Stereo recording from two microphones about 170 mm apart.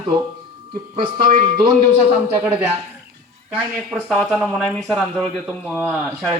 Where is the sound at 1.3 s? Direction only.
45° right (ahead or behind).